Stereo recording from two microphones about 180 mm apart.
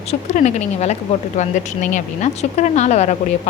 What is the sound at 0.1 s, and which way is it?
Speech, 40° left (ahead or behind).